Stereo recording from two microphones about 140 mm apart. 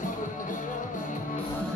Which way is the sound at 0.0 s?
70° left (ahead or behind).